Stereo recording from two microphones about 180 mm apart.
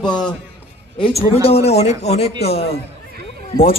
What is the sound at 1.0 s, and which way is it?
Speech, 35° left (ahead or behind).